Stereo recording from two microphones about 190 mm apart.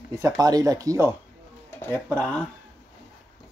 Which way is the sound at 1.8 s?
10° left (ahead or behind).